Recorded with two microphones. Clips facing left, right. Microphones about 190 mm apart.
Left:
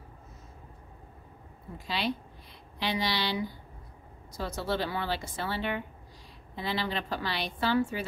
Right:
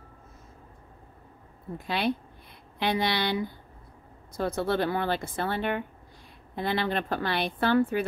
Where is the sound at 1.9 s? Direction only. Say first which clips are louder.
Right 4 dB; 55° right (ahead or behind).